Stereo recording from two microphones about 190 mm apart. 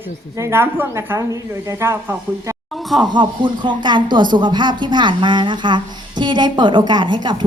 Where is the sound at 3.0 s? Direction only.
25° right (ahead or behind).